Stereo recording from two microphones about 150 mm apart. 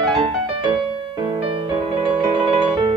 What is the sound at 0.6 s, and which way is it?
Music, 30° right (ahead or behind).